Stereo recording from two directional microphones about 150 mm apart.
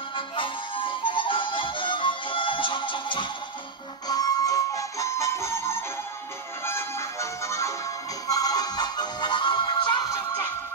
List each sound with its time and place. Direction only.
0.1 s harmonica: 35° left (ahead or behind)
4.1 s music: 25° left (ahead or behind)